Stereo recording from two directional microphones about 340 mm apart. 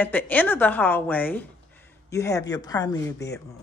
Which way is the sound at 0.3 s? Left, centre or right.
Centre.